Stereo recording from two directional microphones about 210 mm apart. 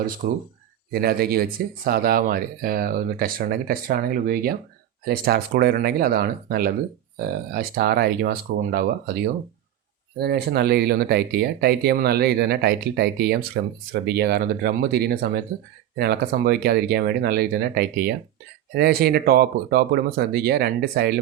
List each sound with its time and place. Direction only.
0.2 s speech: 40° right (ahead or behind)